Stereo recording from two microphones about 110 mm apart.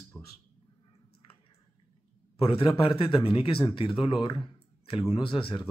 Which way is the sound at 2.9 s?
50° left (ahead or behind).